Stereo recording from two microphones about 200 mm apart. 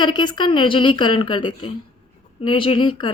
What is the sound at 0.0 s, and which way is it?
A woman's voice, 20° left (ahead or behind).